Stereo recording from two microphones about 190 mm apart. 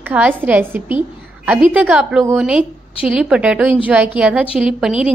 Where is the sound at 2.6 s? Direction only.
30° left (ahead or behind).